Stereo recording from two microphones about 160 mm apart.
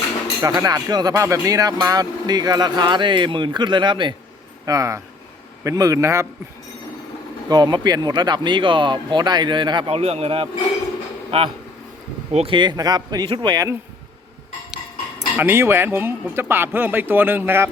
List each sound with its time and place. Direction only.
0.4 s speech: 25° right (ahead or behind)
7.4 s speech: 25° right (ahead or behind)
15.4 s speech: 15° right (ahead or behind)